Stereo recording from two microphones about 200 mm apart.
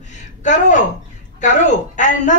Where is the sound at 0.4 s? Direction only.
35° left (ahead or behind).